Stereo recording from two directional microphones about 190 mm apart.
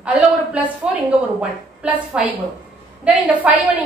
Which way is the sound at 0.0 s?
5° right (ahead or behind).